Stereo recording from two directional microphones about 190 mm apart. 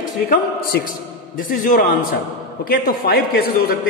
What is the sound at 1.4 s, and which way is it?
A man's voice, 50° left (ahead or behind).